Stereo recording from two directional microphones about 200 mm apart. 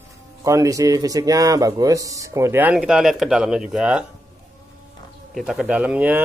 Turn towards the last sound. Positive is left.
turn(degrees=-5)  # may be behind; listen again after turning